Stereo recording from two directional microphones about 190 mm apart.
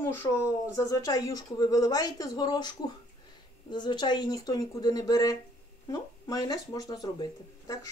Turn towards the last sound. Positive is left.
turn(degrees=20)  # may be behind; listen again after turning